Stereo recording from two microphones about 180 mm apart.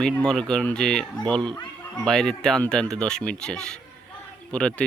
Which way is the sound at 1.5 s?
20° left (ahead or behind).